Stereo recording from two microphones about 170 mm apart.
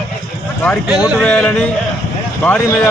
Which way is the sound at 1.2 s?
5° left (ahead or behind).